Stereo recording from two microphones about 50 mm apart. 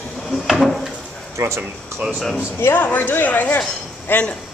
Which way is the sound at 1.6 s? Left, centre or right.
Right.